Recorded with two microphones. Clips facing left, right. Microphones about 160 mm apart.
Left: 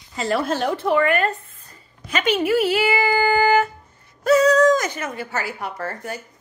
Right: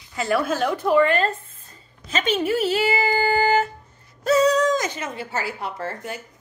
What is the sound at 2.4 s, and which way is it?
Speech, 30° right (ahead or behind).